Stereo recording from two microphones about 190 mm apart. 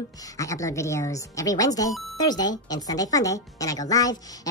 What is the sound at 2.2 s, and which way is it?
A woman's voice, 20° left (ahead or behind).